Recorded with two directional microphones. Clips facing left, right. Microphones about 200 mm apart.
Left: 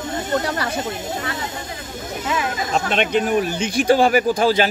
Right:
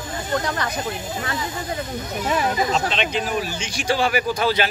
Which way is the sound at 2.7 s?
50° left (ahead or behind).